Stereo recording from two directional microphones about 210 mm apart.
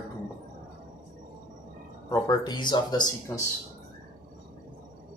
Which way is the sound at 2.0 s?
20° left (ahead or behind).